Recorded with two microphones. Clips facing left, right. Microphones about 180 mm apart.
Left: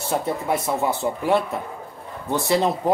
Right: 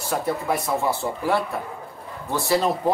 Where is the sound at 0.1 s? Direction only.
25° left (ahead or behind).